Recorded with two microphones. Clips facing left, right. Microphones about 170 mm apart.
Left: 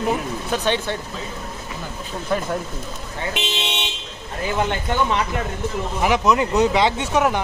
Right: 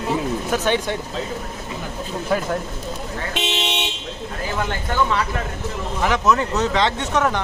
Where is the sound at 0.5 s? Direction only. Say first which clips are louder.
Even; 10° right (ahead or behind).